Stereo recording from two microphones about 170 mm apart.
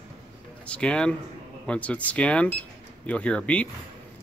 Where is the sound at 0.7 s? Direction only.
5° left (ahead or behind).